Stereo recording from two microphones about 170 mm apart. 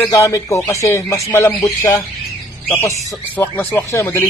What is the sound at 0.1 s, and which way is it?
Speech, 15° left (ahead or behind).